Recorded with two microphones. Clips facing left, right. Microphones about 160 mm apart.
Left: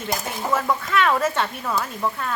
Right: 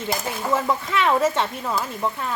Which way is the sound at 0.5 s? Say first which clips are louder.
Left 1 dB; 20° right (ahead or behind).